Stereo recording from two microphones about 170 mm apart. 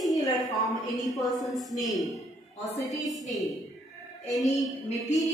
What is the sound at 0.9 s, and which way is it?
Speech, centre (ahead or behind).